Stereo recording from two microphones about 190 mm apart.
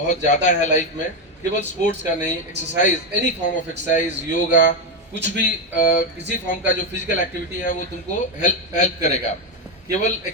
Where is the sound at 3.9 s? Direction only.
45° left (ahead or behind).